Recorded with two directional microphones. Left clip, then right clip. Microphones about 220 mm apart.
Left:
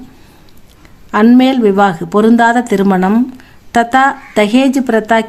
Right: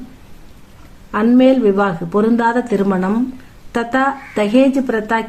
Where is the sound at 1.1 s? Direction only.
45° left (ahead or behind).